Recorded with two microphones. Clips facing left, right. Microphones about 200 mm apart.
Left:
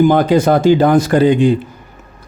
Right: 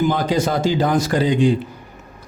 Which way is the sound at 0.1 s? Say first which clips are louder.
Left 8 dB; 60° left (ahead or behind).